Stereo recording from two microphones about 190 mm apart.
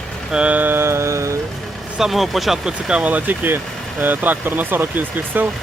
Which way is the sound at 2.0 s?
Centre (ahead or behind).